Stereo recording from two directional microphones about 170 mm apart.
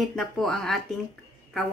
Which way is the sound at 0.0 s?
Centre (ahead or behind).